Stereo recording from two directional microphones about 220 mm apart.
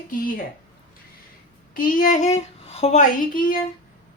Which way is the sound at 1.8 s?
40° left (ahead or behind).